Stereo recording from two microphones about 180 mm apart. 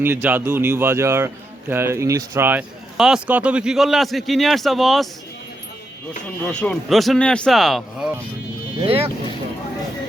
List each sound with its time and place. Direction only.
0.0 s speech: 10° right (ahead or behind)
6.5 s speech: 5° left (ahead or behind)
8.8 s speech: 30° right (ahead or behind)